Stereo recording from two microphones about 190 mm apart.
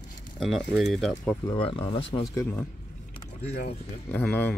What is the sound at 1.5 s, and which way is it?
Speech, 25° left (ahead or behind).